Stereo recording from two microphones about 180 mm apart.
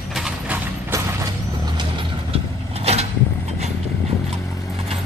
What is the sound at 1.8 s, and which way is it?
Mechanisms, 30° right (ahead or behind).